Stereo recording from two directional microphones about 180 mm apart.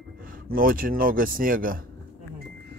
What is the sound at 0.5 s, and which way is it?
Speech, 50° right (ahead or behind).